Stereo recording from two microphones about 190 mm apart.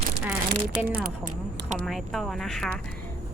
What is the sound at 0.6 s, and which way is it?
Speech, 50° right (ahead or behind).